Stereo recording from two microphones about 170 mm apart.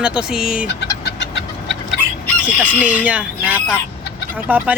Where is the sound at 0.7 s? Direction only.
90° left.